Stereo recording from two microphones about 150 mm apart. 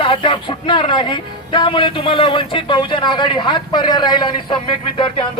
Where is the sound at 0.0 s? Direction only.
35° left (ahead or behind).